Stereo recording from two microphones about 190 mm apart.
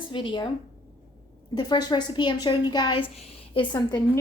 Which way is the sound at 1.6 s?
20° left (ahead or behind).